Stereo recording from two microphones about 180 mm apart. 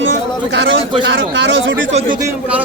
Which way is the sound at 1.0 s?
80° right.